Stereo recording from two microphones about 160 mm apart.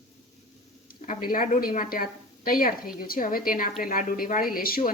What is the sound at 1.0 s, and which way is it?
A woman's voice, 65° left (ahead or behind).